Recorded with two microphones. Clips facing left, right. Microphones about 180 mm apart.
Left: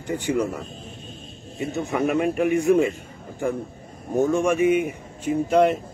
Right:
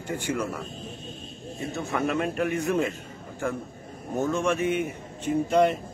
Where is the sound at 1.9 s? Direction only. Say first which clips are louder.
Left 5 dB; centre (ahead or behind).